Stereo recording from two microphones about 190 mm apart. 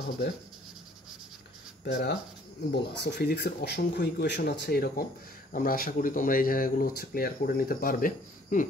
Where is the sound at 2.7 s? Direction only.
60° left (ahead or behind).